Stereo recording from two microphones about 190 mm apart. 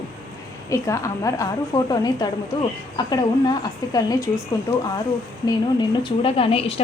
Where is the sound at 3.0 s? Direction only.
20° left (ahead or behind).